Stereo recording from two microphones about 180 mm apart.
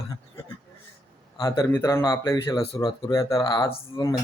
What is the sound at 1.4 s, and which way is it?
Speech, 20° left (ahead or behind).